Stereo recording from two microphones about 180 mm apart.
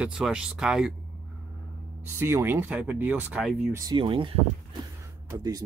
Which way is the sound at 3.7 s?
25° right (ahead or behind).